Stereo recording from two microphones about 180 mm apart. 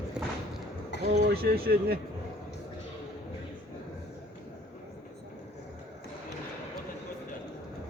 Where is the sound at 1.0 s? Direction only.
60° right (ahead or behind).